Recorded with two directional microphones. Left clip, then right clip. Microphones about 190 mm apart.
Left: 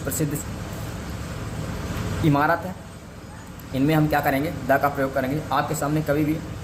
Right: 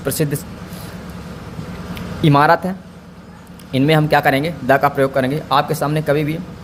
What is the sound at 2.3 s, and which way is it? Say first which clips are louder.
Speech: right 8 dB; 50° right (ahead or behind).